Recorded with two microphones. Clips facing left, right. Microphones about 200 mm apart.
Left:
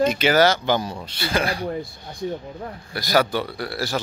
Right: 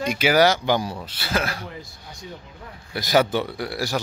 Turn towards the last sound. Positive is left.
turn(degrees=-15)  # may be behind; listen again after turning